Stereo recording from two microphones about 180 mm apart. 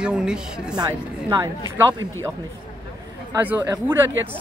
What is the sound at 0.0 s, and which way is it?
Speech, 5° right (ahead or behind).